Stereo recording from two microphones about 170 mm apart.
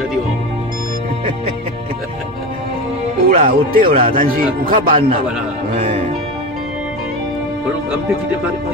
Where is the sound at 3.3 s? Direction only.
50° right (ahead or behind).